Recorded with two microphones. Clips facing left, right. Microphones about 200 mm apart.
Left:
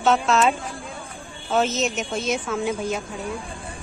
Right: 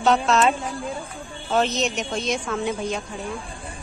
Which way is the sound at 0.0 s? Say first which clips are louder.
Even; centre (ahead or behind).